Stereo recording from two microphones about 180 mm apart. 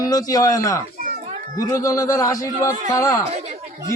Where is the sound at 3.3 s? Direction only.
35° right (ahead or behind).